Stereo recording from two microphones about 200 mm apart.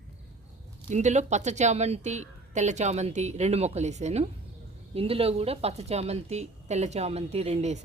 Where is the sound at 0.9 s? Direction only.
35° right (ahead or behind).